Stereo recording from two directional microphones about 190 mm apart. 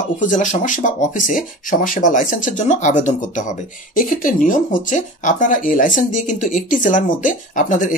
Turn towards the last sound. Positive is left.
turn(degrees=45)  # may be behind; listen again after turning